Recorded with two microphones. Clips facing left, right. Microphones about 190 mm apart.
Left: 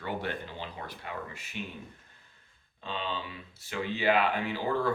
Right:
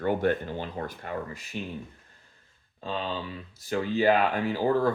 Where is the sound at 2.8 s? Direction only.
40° right (ahead or behind).